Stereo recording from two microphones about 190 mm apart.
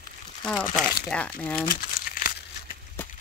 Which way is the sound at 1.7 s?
50° left (ahead or behind).